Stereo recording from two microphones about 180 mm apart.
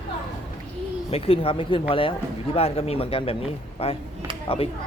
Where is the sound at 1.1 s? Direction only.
30° left (ahead or behind).